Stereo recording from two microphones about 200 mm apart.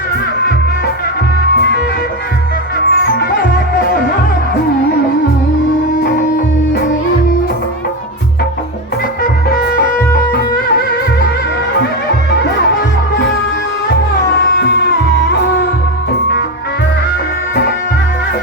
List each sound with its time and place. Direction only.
2.9 s music: 50° left (ahead or behind)
9.2 s music: 45° left (ahead or behind)
17.5 s music: 45° left (ahead or behind)